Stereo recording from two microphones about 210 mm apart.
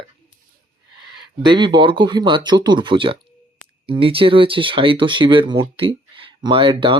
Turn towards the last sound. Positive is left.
turn(degrees=-25)  # may be behind; listen again after turning